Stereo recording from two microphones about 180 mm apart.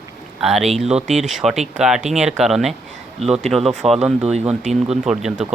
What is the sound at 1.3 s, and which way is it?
Speech, centre (ahead or behind).